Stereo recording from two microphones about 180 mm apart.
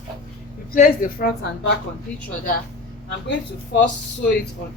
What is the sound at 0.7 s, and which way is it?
A woman's voice, 55° left (ahead or behind).